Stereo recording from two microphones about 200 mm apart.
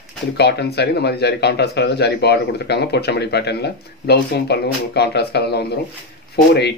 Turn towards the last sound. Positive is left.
turn(degrees=55)  # may be behind; listen again after turning